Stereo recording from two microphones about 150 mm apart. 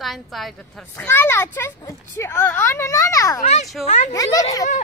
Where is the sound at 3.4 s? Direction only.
50° left (ahead or behind).